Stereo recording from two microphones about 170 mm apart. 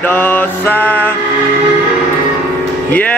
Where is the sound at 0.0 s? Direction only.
10° left (ahead or behind).